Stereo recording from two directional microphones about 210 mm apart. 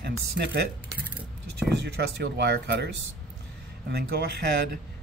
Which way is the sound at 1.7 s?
55° right (ahead or behind).